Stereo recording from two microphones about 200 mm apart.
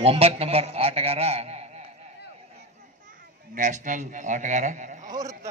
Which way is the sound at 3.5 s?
40° right (ahead or behind).